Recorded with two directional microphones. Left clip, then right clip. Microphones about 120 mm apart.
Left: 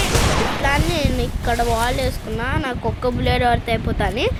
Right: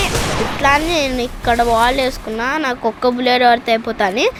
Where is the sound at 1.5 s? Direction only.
Centre (ahead or behind).